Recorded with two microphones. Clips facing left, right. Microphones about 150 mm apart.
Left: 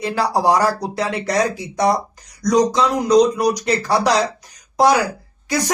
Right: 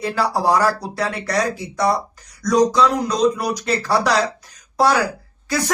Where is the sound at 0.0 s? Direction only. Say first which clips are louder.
Left 2 dB; 15° left (ahead or behind).